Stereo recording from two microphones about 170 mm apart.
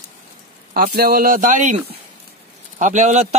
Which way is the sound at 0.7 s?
60° right (ahead or behind).